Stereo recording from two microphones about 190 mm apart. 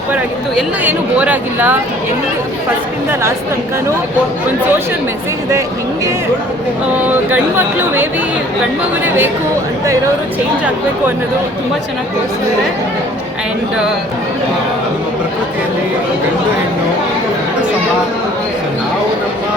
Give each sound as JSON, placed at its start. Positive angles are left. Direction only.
{"t": 0.1, "sound": "speech", "side_deg": -10}
{"t": 7.0, "sound": "speech", "side_deg": -10}
{"t": 9.0, "sound": "speech", "side_deg": -10}